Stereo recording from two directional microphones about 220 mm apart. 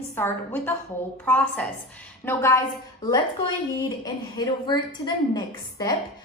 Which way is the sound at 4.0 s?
20° left (ahead or behind).